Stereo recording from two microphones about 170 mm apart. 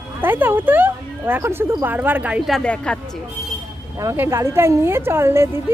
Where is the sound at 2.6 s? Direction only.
5° left (ahead or behind).